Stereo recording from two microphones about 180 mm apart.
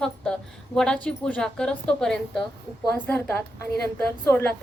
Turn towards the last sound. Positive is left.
turn(degrees=10)  # may be behind; listen again after turning